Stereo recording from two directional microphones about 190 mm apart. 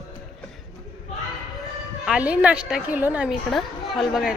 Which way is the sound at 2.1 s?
5° right (ahead or behind).